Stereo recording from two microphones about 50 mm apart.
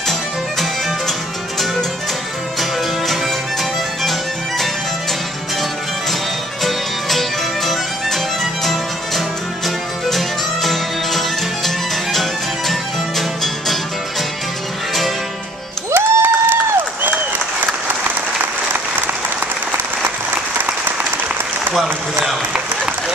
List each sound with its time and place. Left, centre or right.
4.0 s music: centre
6.6 s music: centre
10.0 s music: centre
15.9 s a sound: right